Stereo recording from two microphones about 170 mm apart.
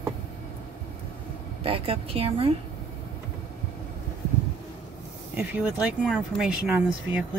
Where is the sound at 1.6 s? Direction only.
35° right (ahead or behind).